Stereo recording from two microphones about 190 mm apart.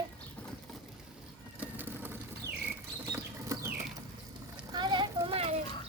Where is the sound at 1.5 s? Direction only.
10° right (ahead or behind).